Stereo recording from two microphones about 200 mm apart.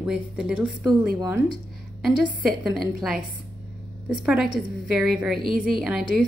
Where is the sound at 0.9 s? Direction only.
15° right (ahead or behind).